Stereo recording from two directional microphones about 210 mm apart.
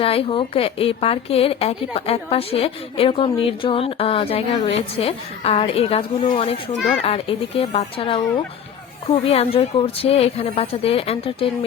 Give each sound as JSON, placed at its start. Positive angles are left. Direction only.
{"t": 0.0, "sound": "a woman's voice", "side_deg": 25}